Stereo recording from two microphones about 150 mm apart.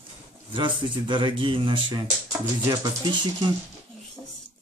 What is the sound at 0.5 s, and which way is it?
Speech, 35° right (ahead or behind).